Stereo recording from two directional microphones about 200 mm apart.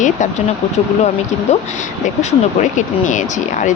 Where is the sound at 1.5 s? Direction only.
35° left (ahead or behind).